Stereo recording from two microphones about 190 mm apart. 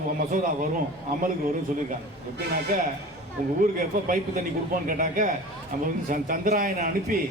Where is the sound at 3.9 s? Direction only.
45° right (ahead or behind).